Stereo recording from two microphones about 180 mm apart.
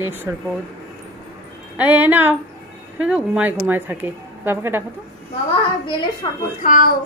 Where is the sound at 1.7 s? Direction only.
10° right (ahead or behind).